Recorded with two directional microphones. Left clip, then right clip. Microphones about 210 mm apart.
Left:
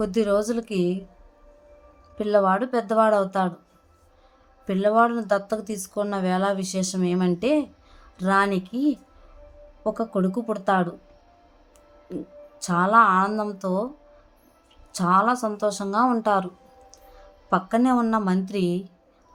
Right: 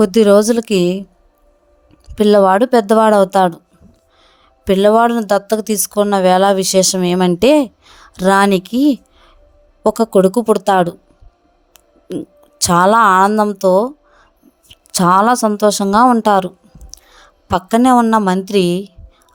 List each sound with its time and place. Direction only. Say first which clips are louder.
0.0 s speech: right 13 dB; 45° right (ahead or behind)
2.1 s speech: right 11 dB; 50° right (ahead or behind)
4.6 s a woman's voice: right 9 dB; 45° right (ahead or behind)
14.9 s a woman's voice: right 9 dB; 45° right (ahead or behind)